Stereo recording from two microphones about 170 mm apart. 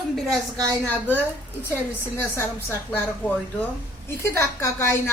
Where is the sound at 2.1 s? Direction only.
15° left (ahead or behind).